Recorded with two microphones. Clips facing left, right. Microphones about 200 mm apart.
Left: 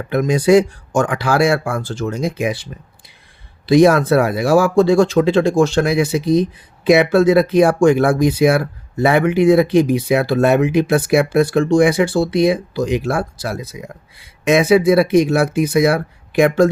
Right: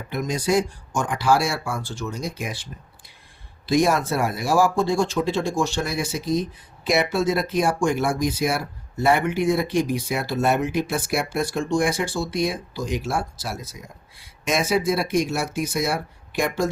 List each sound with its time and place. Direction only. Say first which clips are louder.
0.1 s speech: left 10 dB; 60° left (ahead or behind)
3.7 s speech: left 9 dB; 70° left (ahead or behind)